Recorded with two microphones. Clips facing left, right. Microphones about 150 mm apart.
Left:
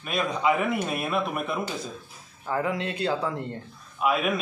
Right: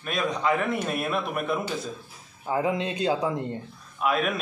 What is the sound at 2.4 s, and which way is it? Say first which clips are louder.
A man's voice: right 2 dB; 20° right (ahead or behind).